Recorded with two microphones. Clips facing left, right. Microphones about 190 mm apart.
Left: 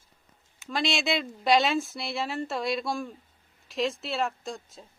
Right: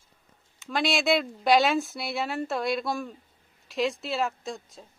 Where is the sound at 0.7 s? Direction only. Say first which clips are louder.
Right 3 dB; centre (ahead or behind).